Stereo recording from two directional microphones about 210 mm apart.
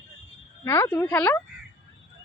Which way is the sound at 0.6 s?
10° left (ahead or behind).